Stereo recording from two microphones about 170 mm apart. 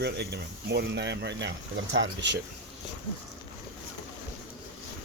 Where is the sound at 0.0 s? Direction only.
75° right (ahead or behind).